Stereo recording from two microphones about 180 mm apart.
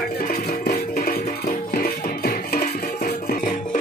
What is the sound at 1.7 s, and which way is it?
Music, 55° left (ahead or behind).